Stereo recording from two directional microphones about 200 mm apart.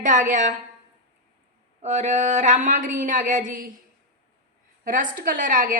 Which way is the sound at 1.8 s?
35° right (ahead or behind).